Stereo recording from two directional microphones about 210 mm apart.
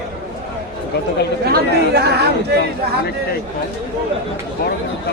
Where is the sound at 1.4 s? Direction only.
50° right (ahead or behind).